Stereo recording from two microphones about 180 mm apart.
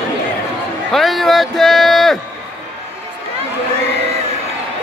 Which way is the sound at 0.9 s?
Centre (ahead or behind).